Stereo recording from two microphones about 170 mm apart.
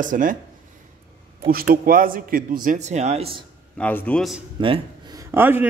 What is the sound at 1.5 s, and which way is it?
A man's voice, 60° right (ahead or behind).